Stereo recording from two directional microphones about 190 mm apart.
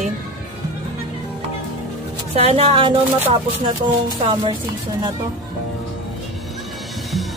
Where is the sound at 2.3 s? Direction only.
30° right (ahead or behind).